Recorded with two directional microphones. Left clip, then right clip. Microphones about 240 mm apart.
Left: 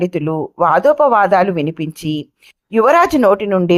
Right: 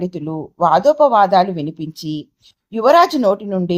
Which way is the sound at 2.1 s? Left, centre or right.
Left.